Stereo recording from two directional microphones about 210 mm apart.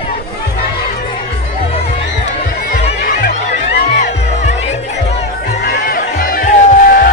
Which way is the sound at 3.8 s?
45° left (ahead or behind).